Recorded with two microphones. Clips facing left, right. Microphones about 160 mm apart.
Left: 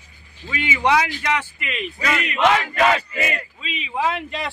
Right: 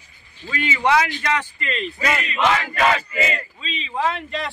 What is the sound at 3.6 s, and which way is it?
Speech, 10° left (ahead or behind).